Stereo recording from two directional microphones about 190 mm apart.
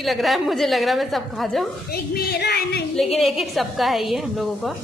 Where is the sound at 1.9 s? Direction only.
55° left (ahead or behind).